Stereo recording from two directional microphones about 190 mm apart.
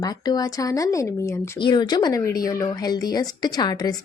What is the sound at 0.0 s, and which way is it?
A woman's voice, 20° left (ahead or behind).